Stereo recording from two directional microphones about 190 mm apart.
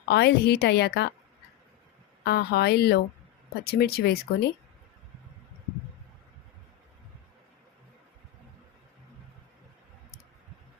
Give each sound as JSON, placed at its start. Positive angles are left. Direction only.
{"t": 0.1, "sound": "a woman's voice", "side_deg": 60}
{"t": 2.2, "sound": "a woman's voice", "side_deg": 60}